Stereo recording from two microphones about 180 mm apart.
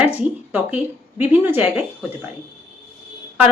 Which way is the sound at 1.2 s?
10° right (ahead or behind).